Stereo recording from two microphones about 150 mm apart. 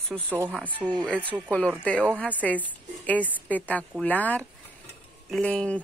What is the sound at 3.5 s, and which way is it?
Speech, 10° left (ahead or behind).